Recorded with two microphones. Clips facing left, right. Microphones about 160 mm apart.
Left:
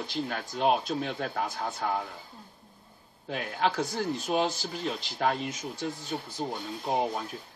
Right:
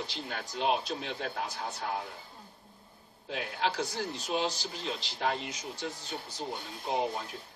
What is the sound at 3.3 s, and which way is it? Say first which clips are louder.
Speech: left 4 dB; 50° left (ahead or behind).